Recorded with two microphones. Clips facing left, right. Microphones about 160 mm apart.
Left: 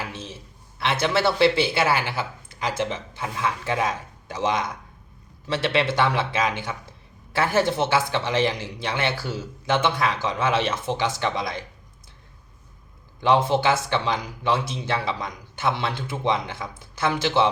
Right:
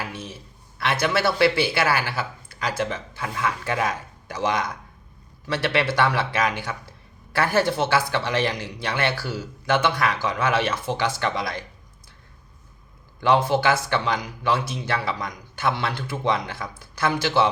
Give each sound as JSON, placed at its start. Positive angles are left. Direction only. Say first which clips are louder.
{"t": 0.0, "sound": "a man's voice", "louder": "right 1 dB", "side_deg": 25}
{"t": 13.1, "sound": "speech", "louder": "even", "side_deg": 25}